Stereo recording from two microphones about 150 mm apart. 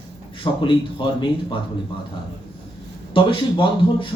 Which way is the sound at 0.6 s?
35° left (ahead or behind).